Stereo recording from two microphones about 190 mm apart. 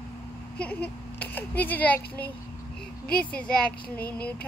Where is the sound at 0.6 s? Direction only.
10° left (ahead or behind).